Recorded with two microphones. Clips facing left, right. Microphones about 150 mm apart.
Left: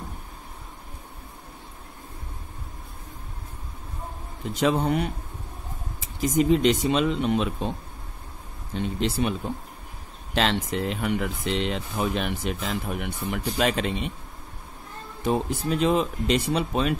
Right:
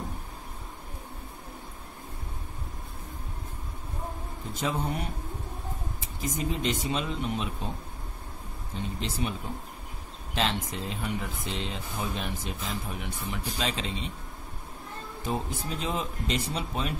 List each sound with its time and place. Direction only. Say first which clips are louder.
4.6 s speech: left 8 dB; 80° left
8.7 s speech: left 8 dB; 75° left (ahead or behind)
10.3 s speech: left 5 dB; 75° left (ahead or behind)
15.2 s speech: left 8 dB; 75° left (ahead or behind)